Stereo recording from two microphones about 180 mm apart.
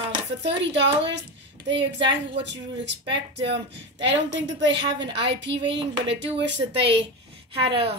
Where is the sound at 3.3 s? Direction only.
80° right.